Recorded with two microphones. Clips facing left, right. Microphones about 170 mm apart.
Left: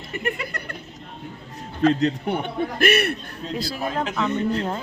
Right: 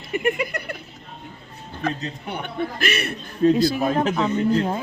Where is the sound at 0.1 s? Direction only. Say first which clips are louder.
Right 6 dB; 15° right (ahead or behind).